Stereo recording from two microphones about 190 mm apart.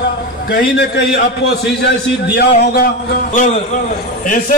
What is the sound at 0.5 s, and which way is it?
A man's voice, 55° left (ahead or behind).